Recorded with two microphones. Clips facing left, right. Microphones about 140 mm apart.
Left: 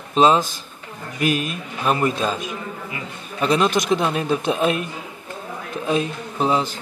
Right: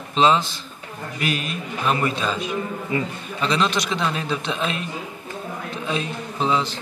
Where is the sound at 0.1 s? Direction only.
45° left (ahead or behind).